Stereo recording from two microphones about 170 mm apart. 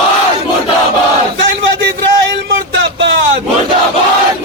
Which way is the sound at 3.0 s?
90° right.